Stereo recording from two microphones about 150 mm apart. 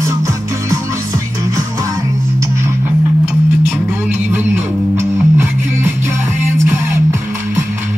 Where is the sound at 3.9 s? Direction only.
15° right (ahead or behind).